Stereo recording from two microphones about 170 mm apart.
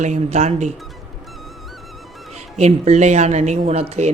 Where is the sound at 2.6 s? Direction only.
40° right (ahead or behind).